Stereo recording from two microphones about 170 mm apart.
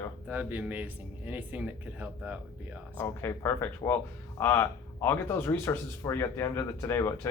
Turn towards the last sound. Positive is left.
turn(degrees=15)  # may be behind; listen again after turning